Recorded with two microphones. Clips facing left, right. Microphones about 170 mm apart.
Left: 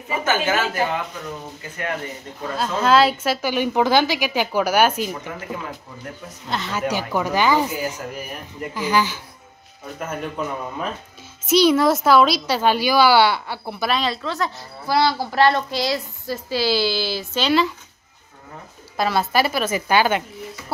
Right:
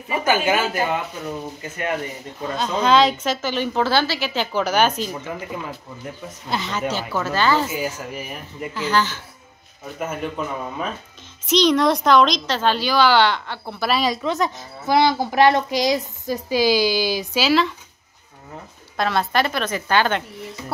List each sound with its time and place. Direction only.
0.2 s a woman's voice: 15° right (ahead or behind)
2.5 s a woman's voice: 5° left (ahead or behind)
6.7 s a woman's voice: 10° left (ahead or behind)
8.1 s speech: 5° right (ahead or behind)
8.7 s a woman's voice: 10° left (ahead or behind)
9.9 s a woman's voice: 5° right (ahead or behind)
13.8 s a woman's voice: 10° right (ahead or behind)
18.9 s a woman's voice: 5° left (ahead or behind)